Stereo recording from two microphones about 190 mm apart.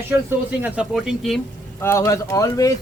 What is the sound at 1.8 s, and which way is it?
Speech, 15° left (ahead or behind).